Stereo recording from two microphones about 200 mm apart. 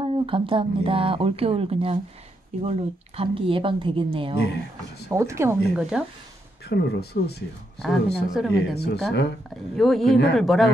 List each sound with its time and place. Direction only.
0.0 s speech: 25° right (ahead or behind)
5.1 s speech: 15° right (ahead or behind)
5.8 s speech: 5° right (ahead or behind)
6.7 s speech: 55° left (ahead or behind)
7.8 s speech: centre (ahead or behind)
8.5 s speech: 55° left (ahead or behind)
9.8 s speech: centre (ahead or behind)